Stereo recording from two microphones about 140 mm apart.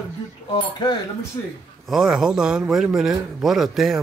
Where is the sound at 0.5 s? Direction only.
30° left (ahead or behind).